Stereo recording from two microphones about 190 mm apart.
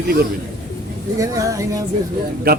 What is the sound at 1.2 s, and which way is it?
Speech, 15° right (ahead or behind).